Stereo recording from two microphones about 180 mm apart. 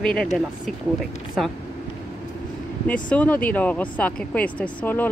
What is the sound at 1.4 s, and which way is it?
Speech, centre (ahead or behind).